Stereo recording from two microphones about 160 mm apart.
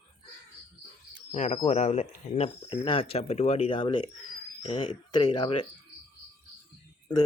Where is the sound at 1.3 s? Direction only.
40° left (ahead or behind).